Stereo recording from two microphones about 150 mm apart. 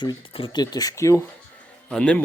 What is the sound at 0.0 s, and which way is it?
Speech, 35° left (ahead or behind).